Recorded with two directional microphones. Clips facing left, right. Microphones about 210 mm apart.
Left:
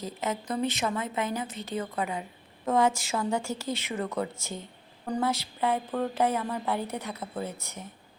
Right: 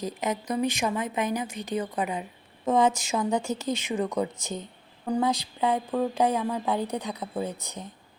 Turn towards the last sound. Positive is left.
turn(degrees=-15)  # may be behind; listen again after turning